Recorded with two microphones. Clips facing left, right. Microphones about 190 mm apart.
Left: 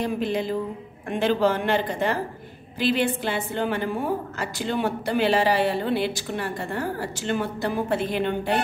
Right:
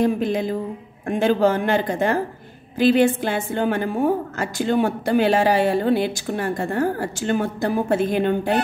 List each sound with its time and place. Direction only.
0.0 s a woman's voice: 45° right (ahead or behind)